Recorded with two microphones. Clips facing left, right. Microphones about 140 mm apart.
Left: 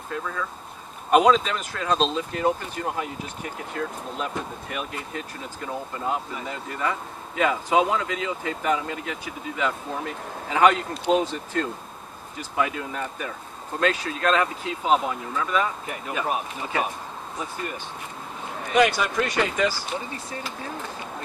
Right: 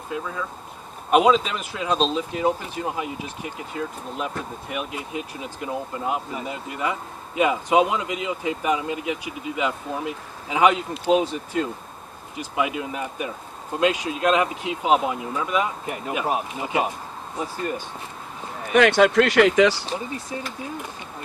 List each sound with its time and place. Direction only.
0.1 s speech: 10° right (ahead or behind)
18.7 s speech: 65° right (ahead or behind); by 19.8 s 85° right